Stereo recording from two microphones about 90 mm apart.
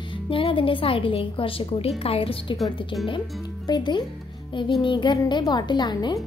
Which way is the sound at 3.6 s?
50° left (ahead or behind).